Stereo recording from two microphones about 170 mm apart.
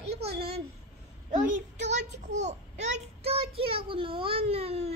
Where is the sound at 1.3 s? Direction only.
45° right (ahead or behind).